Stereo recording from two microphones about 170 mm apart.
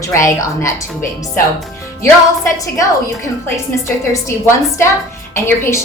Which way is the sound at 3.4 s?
15° left (ahead or behind).